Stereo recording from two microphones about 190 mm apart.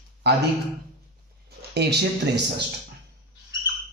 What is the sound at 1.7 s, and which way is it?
Speech, 60° right (ahead or behind).